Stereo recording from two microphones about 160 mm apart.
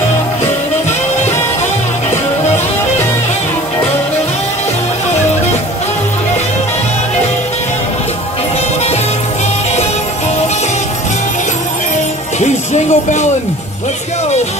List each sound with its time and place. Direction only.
12.4 s music: 45° left (ahead or behind)